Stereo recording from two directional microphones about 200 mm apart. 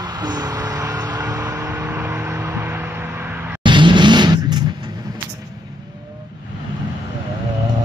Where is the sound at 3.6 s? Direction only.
25° right (ahead or behind).